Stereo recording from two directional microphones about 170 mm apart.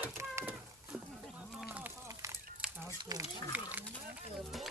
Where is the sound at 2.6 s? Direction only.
5° right (ahead or behind).